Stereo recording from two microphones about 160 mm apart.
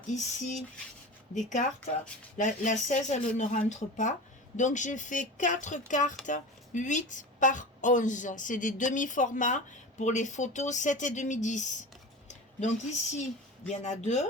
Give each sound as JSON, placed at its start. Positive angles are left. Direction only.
{"t": 0.1, "sound": "speech", "side_deg": 45}